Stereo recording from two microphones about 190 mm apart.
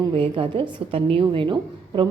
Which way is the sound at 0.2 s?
25° right (ahead or behind).